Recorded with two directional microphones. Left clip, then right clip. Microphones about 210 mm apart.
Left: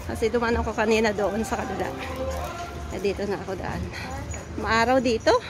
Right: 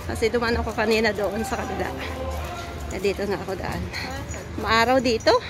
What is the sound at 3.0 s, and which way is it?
Speech, 5° left (ahead or behind).